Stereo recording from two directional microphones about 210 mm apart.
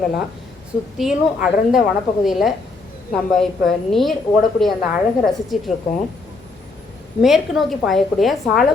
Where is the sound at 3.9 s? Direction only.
Centre (ahead or behind).